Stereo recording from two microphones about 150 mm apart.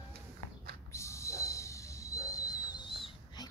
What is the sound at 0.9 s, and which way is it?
Whistle, 20° left (ahead or behind).